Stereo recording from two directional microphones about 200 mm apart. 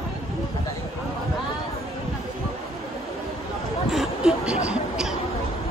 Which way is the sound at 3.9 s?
5° right (ahead or behind).